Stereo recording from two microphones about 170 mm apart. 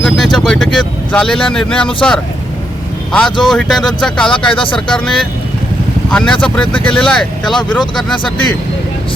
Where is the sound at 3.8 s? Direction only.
25° left (ahead or behind).